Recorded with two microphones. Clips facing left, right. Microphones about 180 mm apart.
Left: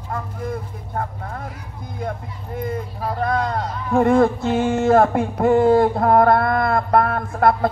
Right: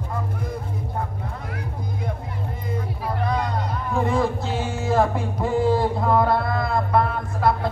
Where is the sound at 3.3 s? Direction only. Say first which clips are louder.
Left 3 dB; 55° left (ahead or behind).